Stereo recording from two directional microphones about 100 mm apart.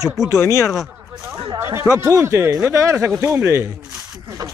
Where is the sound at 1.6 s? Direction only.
25° right (ahead or behind).